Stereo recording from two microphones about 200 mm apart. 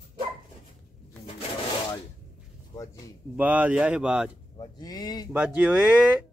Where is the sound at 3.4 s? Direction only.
5° right (ahead or behind).